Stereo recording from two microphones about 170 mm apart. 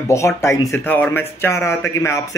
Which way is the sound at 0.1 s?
15° left (ahead or behind).